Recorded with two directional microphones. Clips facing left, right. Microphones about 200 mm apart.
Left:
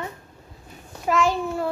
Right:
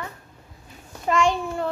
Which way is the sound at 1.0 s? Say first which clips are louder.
Even; centre (ahead or behind).